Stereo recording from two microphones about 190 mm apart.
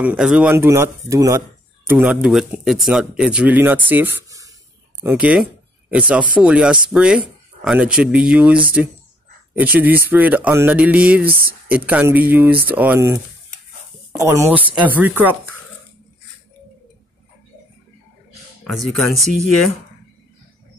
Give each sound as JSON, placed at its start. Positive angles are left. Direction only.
{"t": 0.0, "sound": "speech", "side_deg": -5}
{"t": 11.2, "sound": "speech", "side_deg": -50}
{"t": 11.7, "sound": "speech", "side_deg": -10}
{"t": 18.6, "sound": "speech", "side_deg": 0}